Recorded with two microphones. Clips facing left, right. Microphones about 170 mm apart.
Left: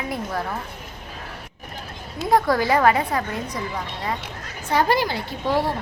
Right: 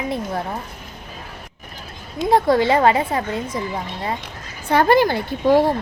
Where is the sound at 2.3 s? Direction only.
25° right (ahead or behind).